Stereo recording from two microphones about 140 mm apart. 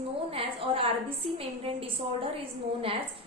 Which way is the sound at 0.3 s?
40° right (ahead or behind).